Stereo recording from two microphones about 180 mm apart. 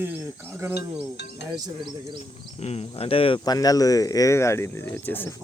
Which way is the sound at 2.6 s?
35° left (ahead or behind).